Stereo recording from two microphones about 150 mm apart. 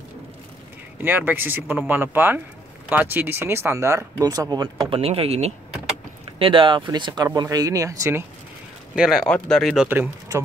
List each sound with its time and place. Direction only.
1.0 s speech: 10° right (ahead or behind)
8.9 s speech: centre (ahead or behind)
9.8 s speech: 15° right (ahead or behind)